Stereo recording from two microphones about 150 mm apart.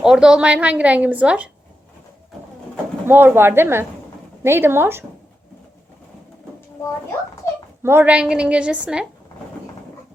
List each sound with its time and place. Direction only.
0.0 s a woman's voice: 5° right (ahead or behind)
3.1 s a woman's voice: 15° right (ahead or behind)
7.8 s a woman's voice: 15° right (ahead or behind)